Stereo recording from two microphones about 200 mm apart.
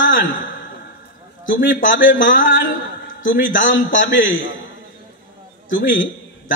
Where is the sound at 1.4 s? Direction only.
70° left (ahead or behind).